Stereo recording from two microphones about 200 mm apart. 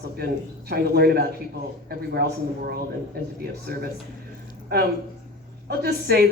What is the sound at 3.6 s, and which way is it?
Speech, 50° right (ahead or behind).